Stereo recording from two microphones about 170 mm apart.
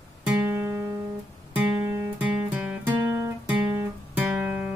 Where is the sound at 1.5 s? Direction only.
10° right (ahead or behind).